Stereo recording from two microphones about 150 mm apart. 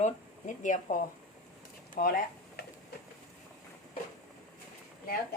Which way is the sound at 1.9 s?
85° left.